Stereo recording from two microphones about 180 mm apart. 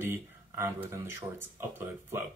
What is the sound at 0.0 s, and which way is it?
Speech, 15° right (ahead or behind).